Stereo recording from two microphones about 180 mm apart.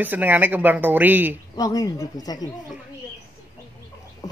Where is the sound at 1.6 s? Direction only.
20° left (ahead or behind).